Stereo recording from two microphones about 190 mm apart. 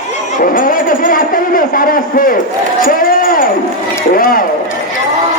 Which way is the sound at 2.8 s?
45° left (ahead or behind).